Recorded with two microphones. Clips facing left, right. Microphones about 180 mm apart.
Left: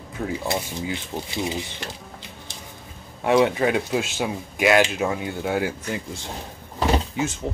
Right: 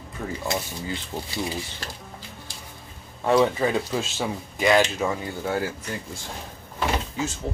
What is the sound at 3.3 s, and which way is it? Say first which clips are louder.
Speech: left 2 dB; 10° left (ahead or behind).